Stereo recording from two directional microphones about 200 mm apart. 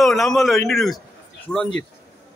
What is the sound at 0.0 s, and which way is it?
A man's voice, centre (ahead or behind).